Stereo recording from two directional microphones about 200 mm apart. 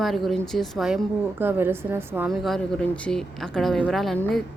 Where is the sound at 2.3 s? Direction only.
Centre (ahead or behind).